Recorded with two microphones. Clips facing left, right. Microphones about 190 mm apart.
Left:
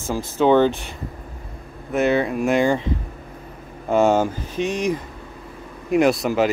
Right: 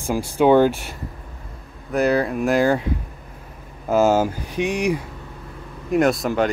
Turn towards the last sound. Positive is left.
turn(degrees=5)  # may be behind; listen again after turning